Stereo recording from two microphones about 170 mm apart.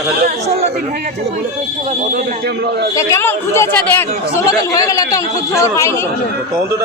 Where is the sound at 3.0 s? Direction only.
15° left (ahead or behind).